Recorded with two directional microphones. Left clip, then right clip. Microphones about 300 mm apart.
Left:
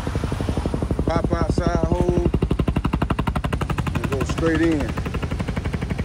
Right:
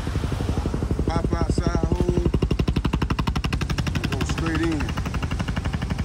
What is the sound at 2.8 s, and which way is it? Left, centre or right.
Machine gun, centre.